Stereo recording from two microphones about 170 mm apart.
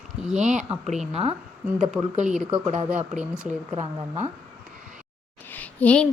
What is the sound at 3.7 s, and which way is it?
Speech, 45° right (ahead or behind).